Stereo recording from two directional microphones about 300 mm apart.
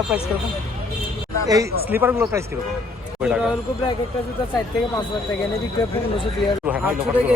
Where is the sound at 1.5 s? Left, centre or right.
Centre.